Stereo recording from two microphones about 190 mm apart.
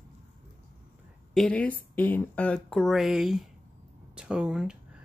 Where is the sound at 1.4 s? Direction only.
5° left (ahead or behind).